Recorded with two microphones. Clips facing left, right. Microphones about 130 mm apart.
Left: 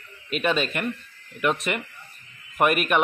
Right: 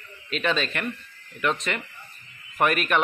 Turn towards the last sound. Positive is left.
turn(degrees=10)  # may be behind; listen again after turning